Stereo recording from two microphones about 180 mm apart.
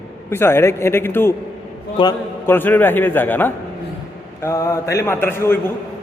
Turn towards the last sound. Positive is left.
turn(degrees=15)  # may be behind; listen again after turning